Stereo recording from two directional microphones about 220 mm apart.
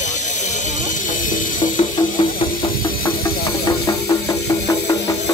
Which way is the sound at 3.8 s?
15° left (ahead or behind).